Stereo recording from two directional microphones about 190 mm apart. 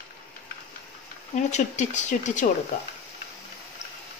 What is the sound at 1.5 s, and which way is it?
Speech, 40° left (ahead or behind).